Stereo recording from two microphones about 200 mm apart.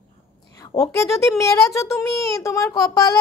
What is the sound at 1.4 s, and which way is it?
A woman's voice, 15° left (ahead or behind).